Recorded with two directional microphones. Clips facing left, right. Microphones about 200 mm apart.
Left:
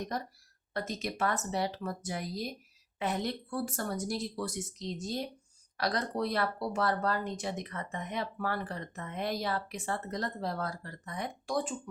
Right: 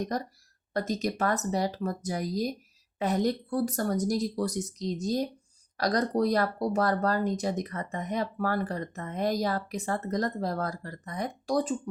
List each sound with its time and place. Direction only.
0.1 s speech: 40° right (ahead or behind)